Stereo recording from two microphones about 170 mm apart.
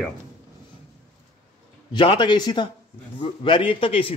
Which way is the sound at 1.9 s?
30° left (ahead or behind).